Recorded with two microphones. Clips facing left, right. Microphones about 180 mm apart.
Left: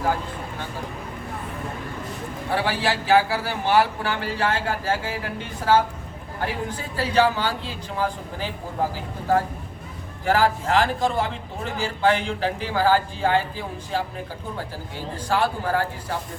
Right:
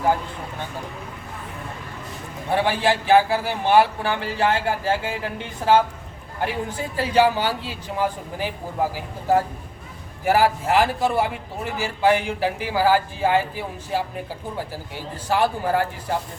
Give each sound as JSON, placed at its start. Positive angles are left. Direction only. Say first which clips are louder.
{"t": 2.5, "sound": "a man's voice", "louder": "right 4 dB", "side_deg": -20}